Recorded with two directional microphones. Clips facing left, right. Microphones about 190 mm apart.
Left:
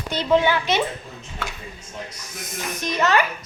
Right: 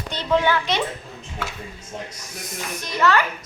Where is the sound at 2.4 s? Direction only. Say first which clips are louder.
Left 2 dB; 20° left (ahead or behind).